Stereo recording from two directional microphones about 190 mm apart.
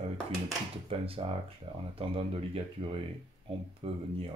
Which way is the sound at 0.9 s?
30° right (ahead or behind).